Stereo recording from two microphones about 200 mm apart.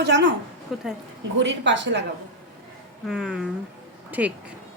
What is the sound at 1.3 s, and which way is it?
Speech, 65° right (ahead or behind).